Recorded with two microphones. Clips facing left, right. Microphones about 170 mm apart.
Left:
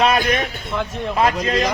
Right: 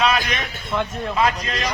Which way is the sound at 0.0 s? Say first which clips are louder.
Left 4 dB; 55° left (ahead or behind).